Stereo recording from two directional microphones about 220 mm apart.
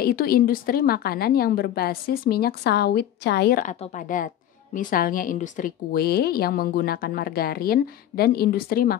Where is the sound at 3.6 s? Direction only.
30° left (ahead or behind).